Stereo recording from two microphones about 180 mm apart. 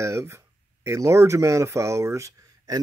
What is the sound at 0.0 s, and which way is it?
Speech, 15° right (ahead or behind).